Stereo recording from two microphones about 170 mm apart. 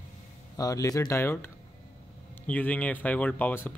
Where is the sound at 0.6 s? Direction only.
20° left (ahead or behind).